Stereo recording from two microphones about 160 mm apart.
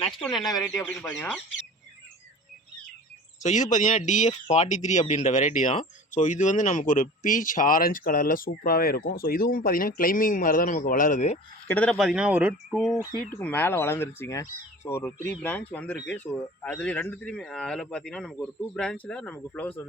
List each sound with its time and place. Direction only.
0.0 s speech: centre (ahead or behind)
0.6 s speech: 10° left (ahead or behind)
3.4 s speech: 50° left (ahead or behind)
11.7 s speech: 5° left (ahead or behind)
13.3 s speech: 10° left (ahead or behind)